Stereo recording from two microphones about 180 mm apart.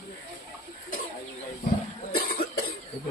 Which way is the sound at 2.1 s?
55° left (ahead or behind).